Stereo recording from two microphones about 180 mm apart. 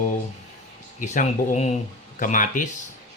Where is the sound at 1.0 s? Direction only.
40° left (ahead or behind).